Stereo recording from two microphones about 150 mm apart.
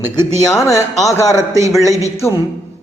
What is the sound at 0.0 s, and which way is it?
Speech, 25° left (ahead or behind).